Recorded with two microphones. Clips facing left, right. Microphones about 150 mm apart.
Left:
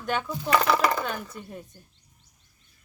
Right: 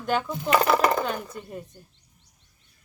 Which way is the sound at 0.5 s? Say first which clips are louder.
Right 2 dB; 15° right (ahead or behind).